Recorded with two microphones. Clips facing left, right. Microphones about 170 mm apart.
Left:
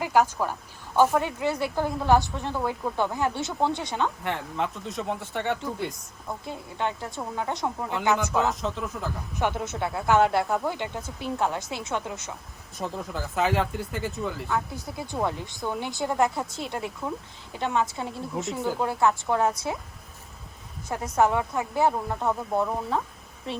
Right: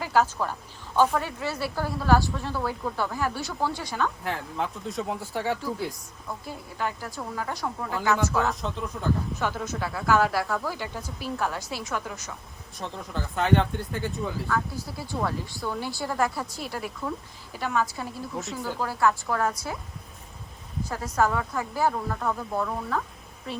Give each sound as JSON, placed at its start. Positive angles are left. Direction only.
{"t": 0.0, "sound": "speech", "side_deg": 15}
{"t": 4.2, "sound": "speech", "side_deg": 0}
{"t": 6.4, "sound": "speech", "side_deg": 25}
{"t": 8.4, "sound": "speech", "side_deg": 0}
{"t": 9.3, "sound": "speech", "side_deg": 20}
{"t": 12.8, "sound": "speech", "side_deg": 5}
{"t": 14.4, "sound": "speech", "side_deg": 20}
{"t": 20.8, "sound": "speech", "side_deg": 20}